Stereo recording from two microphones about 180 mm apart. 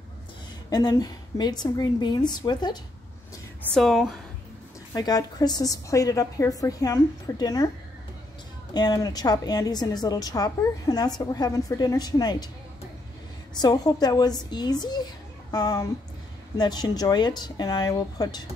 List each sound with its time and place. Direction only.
0.7 s a woman's voice: 20° left (ahead or behind)
3.7 s a woman's voice: centre (ahead or behind)
4.9 s a woman's voice: 20° left (ahead or behind)
8.7 s a woman's voice: 20° left (ahead or behind)
13.6 s a woman's voice: 20° left (ahead or behind)